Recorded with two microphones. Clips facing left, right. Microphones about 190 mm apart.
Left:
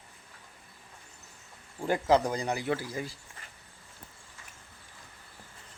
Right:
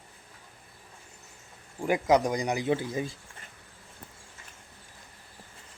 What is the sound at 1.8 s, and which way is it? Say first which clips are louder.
Speech: right 1 dB; 15° right (ahead or behind).